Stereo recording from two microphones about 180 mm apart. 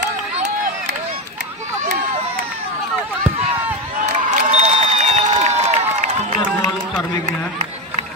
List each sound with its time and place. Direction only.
4.0 s crowd: 40° right (ahead or behind)